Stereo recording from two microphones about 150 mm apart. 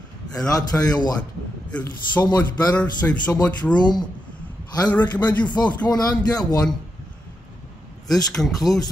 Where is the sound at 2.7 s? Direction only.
10° left (ahead or behind).